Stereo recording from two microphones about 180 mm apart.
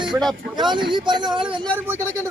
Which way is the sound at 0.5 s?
25° right (ahead or behind).